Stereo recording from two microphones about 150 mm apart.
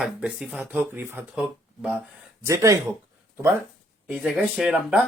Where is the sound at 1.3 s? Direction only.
5° right (ahead or behind).